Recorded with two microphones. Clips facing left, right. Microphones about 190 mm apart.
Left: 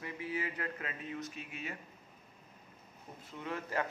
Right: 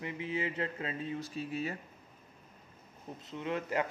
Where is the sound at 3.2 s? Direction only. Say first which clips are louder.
Right 5 dB; 20° right (ahead or behind).